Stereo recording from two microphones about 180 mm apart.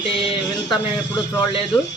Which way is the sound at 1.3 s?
20° left (ahead or behind).